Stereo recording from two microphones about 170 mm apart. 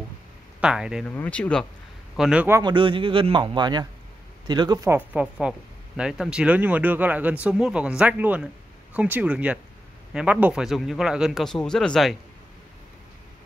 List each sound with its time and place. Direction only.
0.6 s speech: 5° right (ahead or behind)
1.0 s speech: 10° left (ahead or behind)
2.1 s speech: 5° right (ahead or behind)
2.6 s speech: 30° right (ahead or behind)
4.9 s speech: 5° right (ahead or behind)